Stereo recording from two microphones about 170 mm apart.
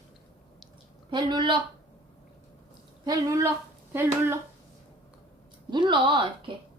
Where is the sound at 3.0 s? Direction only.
20° right (ahead or behind).